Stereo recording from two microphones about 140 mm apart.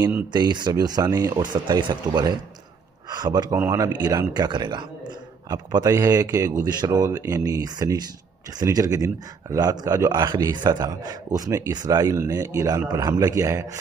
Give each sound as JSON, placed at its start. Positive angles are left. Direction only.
{"t": 0.3, "sound": "speech", "side_deg": -30}
{"t": 3.5, "sound": "speech", "side_deg": -20}